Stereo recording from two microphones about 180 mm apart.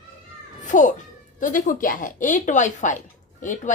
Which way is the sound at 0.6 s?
45° left (ahead or behind).